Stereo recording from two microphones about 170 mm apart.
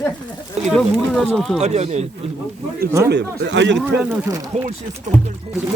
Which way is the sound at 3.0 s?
80° right.